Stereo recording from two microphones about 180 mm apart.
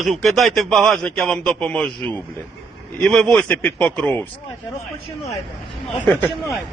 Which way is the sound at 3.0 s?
5° left (ahead or behind).